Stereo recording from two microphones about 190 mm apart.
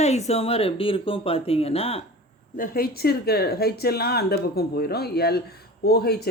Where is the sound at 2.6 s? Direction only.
55° left (ahead or behind).